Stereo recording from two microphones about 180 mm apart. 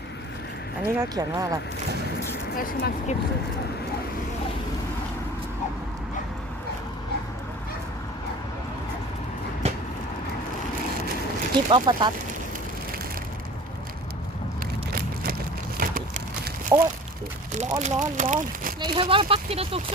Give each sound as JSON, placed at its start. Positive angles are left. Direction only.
{"t": 0.8, "sound": "speech", "side_deg": -15}
{"t": 2.6, "sound": "speech", "side_deg": 50}
{"t": 9.6, "sound": "vehicle", "side_deg": -35}
{"t": 11.7, "sound": "speech", "side_deg": -25}
{"t": 14.9, "sound": "vehicle", "side_deg": -55}
{"t": 15.8, "sound": "a sound", "side_deg": -55}
{"t": 16.7, "sound": "speech", "side_deg": -20}
{"t": 17.6, "sound": "speech", "side_deg": -40}
{"t": 18.8, "sound": "speech", "side_deg": -30}